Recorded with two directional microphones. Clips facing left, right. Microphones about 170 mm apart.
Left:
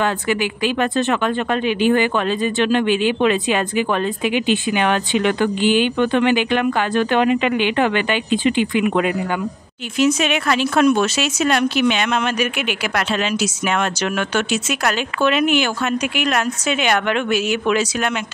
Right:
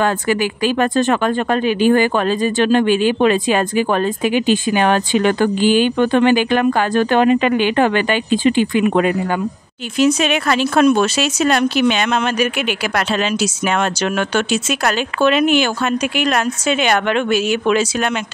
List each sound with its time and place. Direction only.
0.0 s speech: 40° right (ahead or behind)